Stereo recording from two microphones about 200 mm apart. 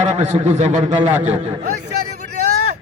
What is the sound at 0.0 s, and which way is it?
A man's voice, 35° right (ahead or behind).